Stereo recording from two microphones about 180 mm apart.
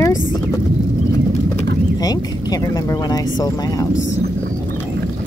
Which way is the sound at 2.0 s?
20° left (ahead or behind).